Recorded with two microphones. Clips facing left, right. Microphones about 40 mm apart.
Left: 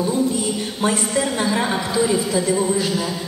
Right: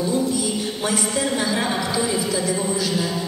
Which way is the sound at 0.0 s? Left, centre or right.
Left.